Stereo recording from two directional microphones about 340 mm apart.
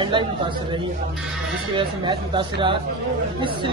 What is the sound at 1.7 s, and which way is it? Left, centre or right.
A woman's voice, centre.